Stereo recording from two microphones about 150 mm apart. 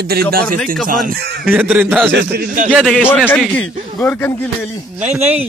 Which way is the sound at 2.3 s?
60° right (ahead or behind).